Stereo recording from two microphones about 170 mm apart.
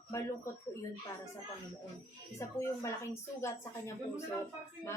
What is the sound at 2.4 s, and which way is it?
A woman's voice, 15° left (ahead or behind).